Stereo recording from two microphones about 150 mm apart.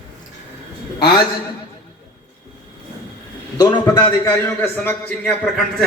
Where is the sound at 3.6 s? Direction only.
25° left (ahead or behind).